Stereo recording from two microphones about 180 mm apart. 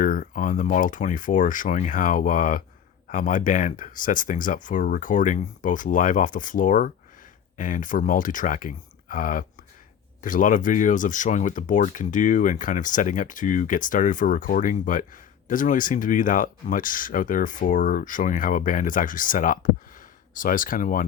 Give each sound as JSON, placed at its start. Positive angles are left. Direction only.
{"t": 0.0, "sound": "speech", "side_deg": 50}